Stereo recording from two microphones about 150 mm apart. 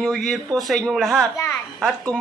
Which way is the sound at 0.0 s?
5° left (ahead or behind).